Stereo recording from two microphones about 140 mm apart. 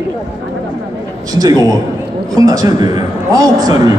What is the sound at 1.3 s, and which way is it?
A man's voice, 25° right (ahead or behind).